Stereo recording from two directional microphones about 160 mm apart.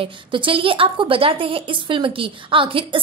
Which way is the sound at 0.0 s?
35° right (ahead or behind).